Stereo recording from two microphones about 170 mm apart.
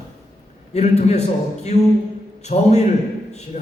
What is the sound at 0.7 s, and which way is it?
A man's voice, 40° left (ahead or behind).